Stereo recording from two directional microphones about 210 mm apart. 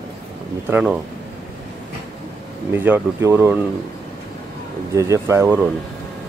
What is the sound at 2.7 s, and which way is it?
Speech, 10° right (ahead or behind).